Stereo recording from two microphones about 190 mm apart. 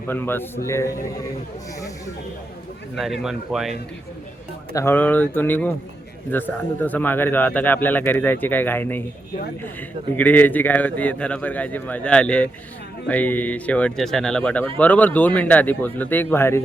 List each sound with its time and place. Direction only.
0.1 s a man's voice: 10° left (ahead or behind)
2.9 s speech: centre (ahead or behind)
4.7 s a man's voice: 15° left (ahead or behind)
10.2 s a man's voice: 10° left (ahead or behind)